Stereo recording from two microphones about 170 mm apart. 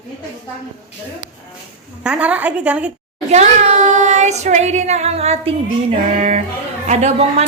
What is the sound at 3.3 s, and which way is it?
A woman's voice, 40° right (ahead or behind).